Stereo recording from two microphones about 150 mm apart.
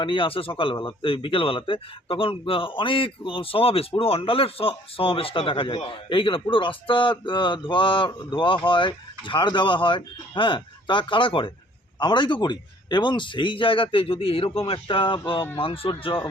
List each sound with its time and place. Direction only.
0.0 s speech: 35° left (ahead or behind)